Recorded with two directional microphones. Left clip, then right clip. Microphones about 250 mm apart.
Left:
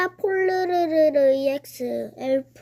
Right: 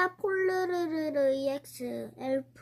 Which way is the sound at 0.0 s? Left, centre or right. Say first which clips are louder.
Left 6 dB; centre.